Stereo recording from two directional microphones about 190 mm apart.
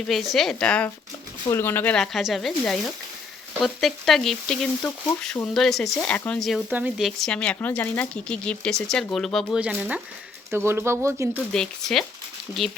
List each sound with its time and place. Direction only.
0.1 s speech: centre (ahead or behind)
11.5 s speech: 5° left (ahead or behind)